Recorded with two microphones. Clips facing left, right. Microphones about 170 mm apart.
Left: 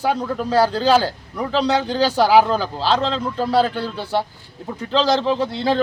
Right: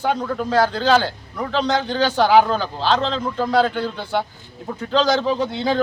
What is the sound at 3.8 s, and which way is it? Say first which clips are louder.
Speech: even; 35° left (ahead or behind).